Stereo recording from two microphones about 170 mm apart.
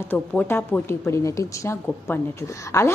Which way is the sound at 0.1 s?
10° left (ahead or behind).